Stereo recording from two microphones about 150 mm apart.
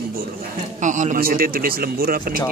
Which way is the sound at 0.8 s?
55° right (ahead or behind).